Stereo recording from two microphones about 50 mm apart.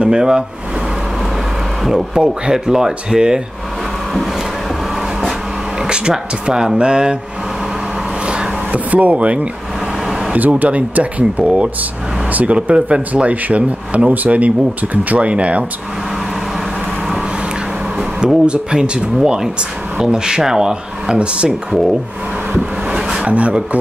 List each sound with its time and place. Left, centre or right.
0.0 s speech: centre
2.1 s speech: centre
5.8 s speech: centre
8.3 s vehicle: right
10.6 s speech: right
12.6 s speech: right
18.2 s speech: centre
22.8 s a sound: centre
23.2 s speech: right